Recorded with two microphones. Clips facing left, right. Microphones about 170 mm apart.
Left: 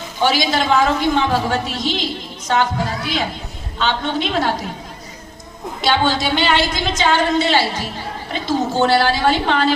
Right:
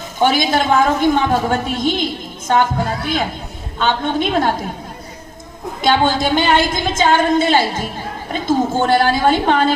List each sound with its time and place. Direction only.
0.2 s a woman's voice: 50° right (ahead or behind)
5.8 s a woman's voice: 50° right (ahead or behind)